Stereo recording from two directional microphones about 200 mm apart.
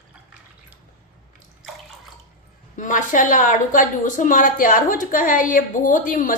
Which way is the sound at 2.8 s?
40° left (ahead or behind).